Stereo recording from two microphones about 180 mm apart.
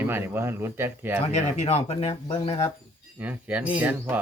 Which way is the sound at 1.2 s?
35° left (ahead or behind).